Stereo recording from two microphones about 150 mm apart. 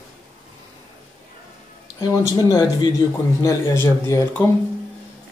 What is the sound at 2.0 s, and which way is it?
A man's voice, 25° left (ahead or behind).